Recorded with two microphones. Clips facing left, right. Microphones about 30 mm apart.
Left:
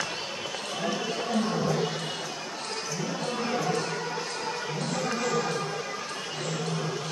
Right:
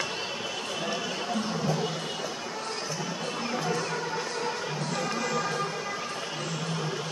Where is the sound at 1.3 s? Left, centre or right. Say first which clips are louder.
Left 3 dB; centre.